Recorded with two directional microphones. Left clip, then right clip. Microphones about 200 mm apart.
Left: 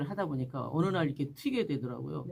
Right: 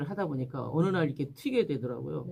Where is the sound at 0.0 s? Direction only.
20° left (ahead or behind).